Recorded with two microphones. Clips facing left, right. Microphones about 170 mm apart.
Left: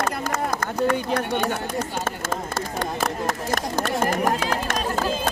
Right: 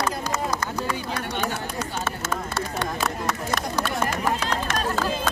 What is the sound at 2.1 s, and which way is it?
Run, 45° left (ahead or behind).